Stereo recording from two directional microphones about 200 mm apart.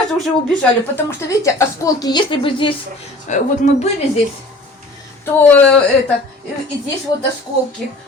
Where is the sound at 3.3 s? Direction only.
35° left (ahead or behind).